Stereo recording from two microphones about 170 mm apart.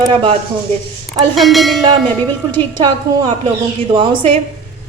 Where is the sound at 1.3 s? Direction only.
Centre (ahead or behind).